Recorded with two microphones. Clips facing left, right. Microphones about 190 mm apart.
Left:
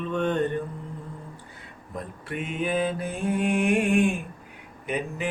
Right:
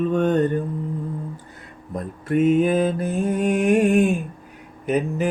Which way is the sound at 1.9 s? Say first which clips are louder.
Right 11 dB; 45° right (ahead or behind).